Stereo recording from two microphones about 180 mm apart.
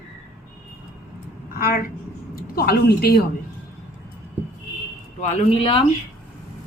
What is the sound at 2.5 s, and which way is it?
Speech, 60° left (ahead or behind).